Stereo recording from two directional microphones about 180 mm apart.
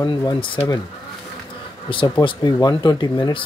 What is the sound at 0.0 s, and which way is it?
Speech, 25° left (ahead or behind).